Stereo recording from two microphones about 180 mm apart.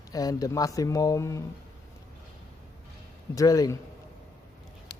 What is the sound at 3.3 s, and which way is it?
Speech, 20° left (ahead or behind).